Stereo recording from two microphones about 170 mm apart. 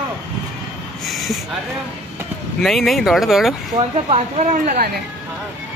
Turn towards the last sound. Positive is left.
turn(degrees=-40)  # may be behind; listen again after turning